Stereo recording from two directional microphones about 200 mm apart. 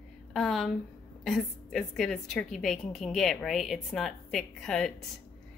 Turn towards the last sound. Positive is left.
turn(degrees=0)  # may be behind; listen again after turning